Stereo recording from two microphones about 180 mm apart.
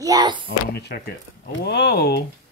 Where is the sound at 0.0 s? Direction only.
20° right (ahead or behind).